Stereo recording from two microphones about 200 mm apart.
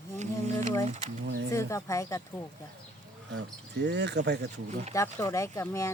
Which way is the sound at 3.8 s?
60° right (ahead or behind).